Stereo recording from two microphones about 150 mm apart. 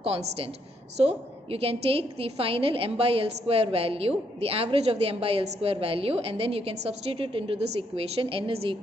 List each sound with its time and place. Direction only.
0.0 s a woman's voice: 40° right (ahead or behind)